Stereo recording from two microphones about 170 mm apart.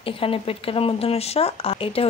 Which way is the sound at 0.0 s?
35° left (ahead or behind).